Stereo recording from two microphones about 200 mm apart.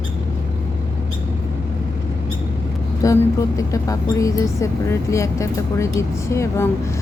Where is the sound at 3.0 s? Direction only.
15° left (ahead or behind).